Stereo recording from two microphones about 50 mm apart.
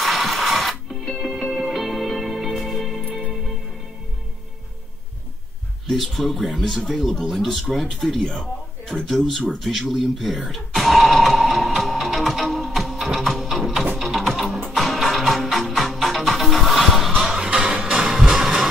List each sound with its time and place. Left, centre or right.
0.0 s music: centre
5.9 s a man's voice: centre
10.5 s music: centre
17.5 s music: right